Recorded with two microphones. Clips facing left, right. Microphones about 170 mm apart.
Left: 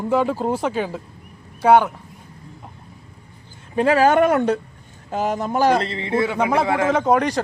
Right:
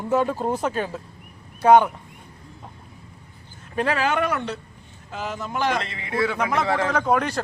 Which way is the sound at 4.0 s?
45° left (ahead or behind).